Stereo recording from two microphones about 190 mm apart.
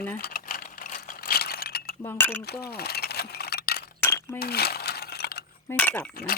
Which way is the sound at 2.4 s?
55° left (ahead or behind).